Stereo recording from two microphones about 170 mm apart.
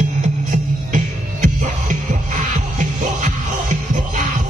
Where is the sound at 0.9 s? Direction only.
50° right (ahead or behind).